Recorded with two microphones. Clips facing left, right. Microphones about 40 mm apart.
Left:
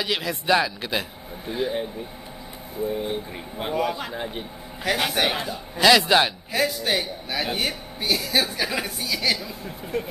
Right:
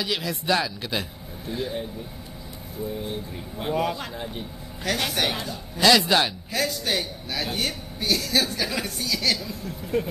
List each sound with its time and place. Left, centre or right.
0.0 s a man's voice: centre
2.9 s a man's voice: left